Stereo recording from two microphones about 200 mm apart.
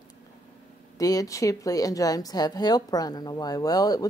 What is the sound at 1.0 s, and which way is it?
Speech, 15° left (ahead or behind).